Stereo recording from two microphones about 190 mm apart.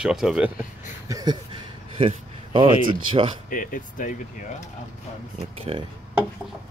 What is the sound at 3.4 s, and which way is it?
Speech, 45° left (ahead or behind).